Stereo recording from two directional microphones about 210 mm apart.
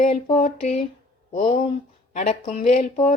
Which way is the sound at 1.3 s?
35° left (ahead or behind).